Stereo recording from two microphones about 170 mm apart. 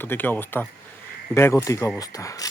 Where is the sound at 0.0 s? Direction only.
10° left (ahead or behind).